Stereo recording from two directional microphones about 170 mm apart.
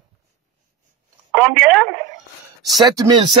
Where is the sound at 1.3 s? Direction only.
Centre (ahead or behind).